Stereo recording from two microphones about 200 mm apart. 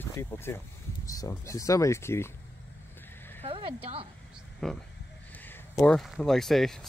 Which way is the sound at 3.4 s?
25° right (ahead or behind).